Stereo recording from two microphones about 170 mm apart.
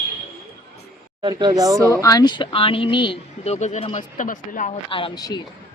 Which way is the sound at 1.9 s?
20° left (ahead or behind).